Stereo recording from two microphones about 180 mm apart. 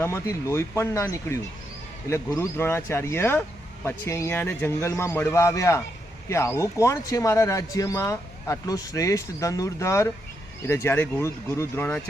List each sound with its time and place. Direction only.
0.0 s speech: 15° left (ahead or behind)